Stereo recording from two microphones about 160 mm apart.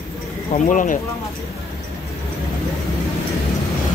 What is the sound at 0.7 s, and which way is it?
Speech, 55° left (ahead or behind).